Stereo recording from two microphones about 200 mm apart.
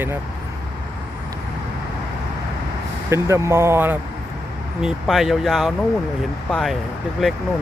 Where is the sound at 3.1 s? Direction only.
15° right (ahead or behind); by 6.8 s centre (ahead or behind).